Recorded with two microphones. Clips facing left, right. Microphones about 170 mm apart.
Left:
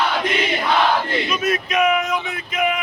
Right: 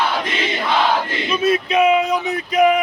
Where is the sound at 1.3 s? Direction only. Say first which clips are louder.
Right 7 dB; 30° right (ahead or behind).